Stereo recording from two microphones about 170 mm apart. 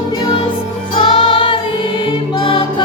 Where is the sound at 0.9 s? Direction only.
35° left (ahead or behind).